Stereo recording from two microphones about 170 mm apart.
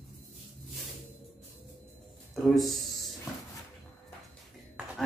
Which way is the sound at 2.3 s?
Centre (ahead or behind).